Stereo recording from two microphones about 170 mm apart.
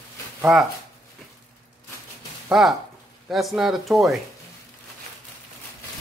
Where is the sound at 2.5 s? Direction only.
Centre (ahead or behind).